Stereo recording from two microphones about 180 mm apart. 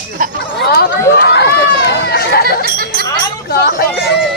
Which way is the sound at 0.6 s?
60° left (ahead or behind).